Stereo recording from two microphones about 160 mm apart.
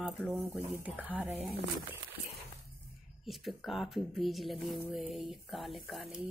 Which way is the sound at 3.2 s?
Centre (ahead or behind).